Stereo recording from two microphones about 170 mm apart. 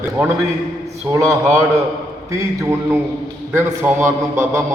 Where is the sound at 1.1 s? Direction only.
15° right (ahead or behind).